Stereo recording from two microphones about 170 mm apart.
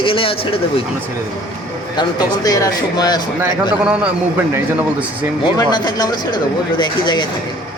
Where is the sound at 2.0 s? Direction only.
25° left (ahead or behind).